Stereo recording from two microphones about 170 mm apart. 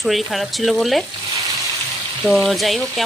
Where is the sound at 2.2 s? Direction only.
Centre (ahead or behind).